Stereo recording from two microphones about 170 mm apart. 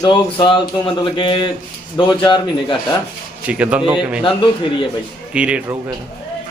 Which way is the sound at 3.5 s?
5° right (ahead or behind).